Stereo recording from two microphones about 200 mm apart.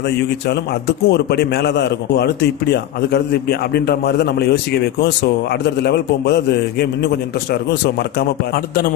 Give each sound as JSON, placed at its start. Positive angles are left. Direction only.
{"t": 0.5, "sound": "a man's voice", "side_deg": 55}